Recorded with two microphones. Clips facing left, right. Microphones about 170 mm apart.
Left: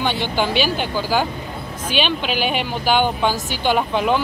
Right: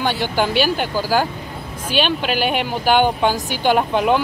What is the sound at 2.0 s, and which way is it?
Speech, 45° right (ahead or behind).